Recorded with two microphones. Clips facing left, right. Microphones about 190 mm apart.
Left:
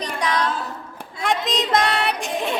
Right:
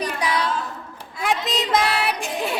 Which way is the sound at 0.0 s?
10° right (ahead or behind).